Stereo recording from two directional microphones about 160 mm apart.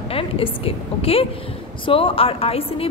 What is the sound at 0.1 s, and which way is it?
A woman's voice, 35° left (ahead or behind).